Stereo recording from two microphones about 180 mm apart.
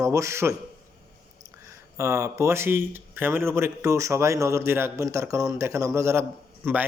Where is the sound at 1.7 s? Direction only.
15° right (ahead or behind).